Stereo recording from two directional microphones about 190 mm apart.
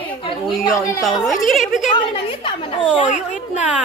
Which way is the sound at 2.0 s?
25° left (ahead or behind).